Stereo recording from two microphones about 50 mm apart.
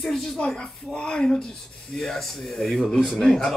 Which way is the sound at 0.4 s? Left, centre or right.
Centre.